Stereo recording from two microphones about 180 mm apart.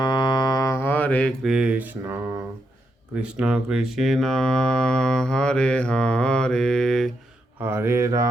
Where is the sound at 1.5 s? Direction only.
5° right (ahead or behind).